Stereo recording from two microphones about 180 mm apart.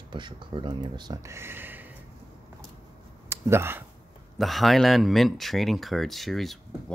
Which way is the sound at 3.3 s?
15° right (ahead or behind).